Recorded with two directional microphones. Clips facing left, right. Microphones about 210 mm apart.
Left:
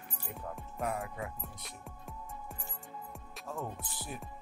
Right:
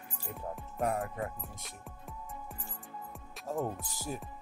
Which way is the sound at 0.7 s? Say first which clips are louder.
Right 4 dB; 45° right (ahead or behind).